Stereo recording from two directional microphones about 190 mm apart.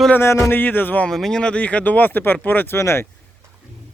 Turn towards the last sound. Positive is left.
turn(degrees=15)  # may be behind; listen again after turning